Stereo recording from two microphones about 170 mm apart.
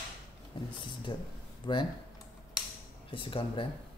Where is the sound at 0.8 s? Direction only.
25° left (ahead or behind).